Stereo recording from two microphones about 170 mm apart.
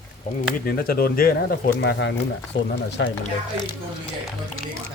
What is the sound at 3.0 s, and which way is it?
Speech, 90° left.